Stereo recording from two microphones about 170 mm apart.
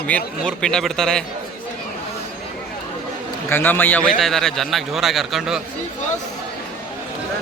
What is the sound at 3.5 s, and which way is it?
A man's voice, 10° left (ahead or behind).